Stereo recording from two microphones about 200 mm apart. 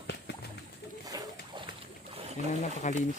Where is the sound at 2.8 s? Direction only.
35° left (ahead or behind).